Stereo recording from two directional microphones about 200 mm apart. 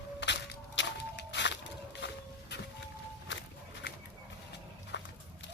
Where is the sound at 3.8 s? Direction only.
60° left (ahead or behind).